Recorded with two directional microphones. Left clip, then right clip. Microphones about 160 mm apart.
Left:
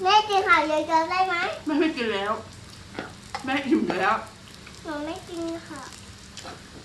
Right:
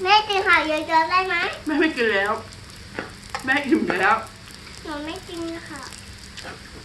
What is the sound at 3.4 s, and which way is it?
Speech, 50° left (ahead or behind).